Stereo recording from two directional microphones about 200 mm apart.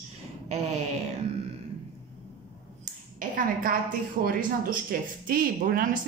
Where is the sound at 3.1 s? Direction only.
45° right (ahead or behind).